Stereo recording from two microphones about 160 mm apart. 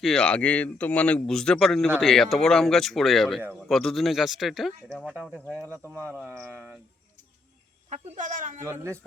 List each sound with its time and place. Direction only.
0.0 s speech: 5° left (ahead or behind)
7.9 s speech: 50° right (ahead or behind)
8.6 s speech: 15° right (ahead or behind)